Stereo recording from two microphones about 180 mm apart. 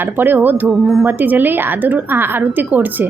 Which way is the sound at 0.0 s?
10° right (ahead or behind).